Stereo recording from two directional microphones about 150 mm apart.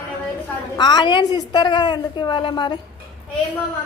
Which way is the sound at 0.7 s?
30° left (ahead or behind).